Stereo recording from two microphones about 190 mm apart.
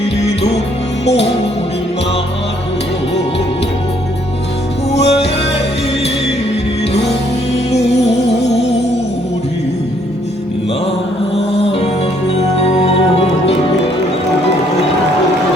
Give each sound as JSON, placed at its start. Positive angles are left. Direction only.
{"t": 1.0, "sound": "music", "side_deg": 30}
{"t": 4.9, "sound": "music", "side_deg": 35}
{"t": 11.6, "sound": "music", "side_deg": 30}